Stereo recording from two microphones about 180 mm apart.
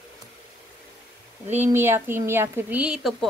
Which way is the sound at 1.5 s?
10° right (ahead or behind).